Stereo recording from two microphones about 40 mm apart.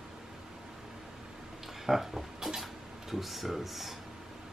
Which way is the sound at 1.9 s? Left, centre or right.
Centre.